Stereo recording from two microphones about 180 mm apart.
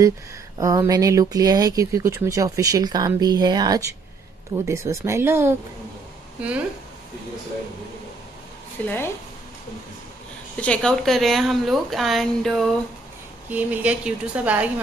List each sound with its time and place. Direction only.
0.6 s speech: 20° right (ahead or behind)
8.8 s speech: 10° left (ahead or behind)
10.6 s a woman's voice: 5° left (ahead or behind)